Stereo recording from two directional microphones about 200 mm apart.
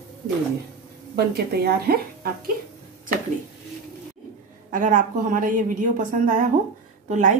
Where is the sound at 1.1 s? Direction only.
50° right (ahead or behind).